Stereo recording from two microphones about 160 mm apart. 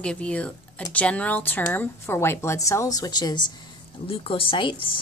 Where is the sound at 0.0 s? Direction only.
5° left (ahead or behind).